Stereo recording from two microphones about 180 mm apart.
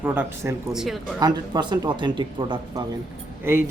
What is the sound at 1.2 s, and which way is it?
Speech, 20° right (ahead or behind).